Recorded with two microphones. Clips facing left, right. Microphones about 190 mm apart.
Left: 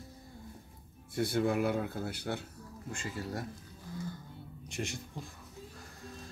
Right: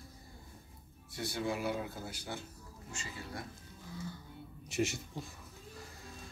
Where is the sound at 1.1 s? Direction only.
55° left (ahead or behind).